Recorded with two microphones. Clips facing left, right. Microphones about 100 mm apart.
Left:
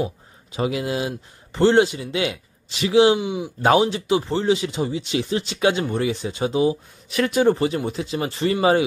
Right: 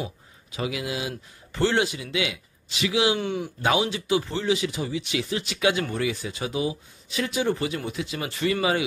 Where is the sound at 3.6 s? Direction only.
35° left (ahead or behind).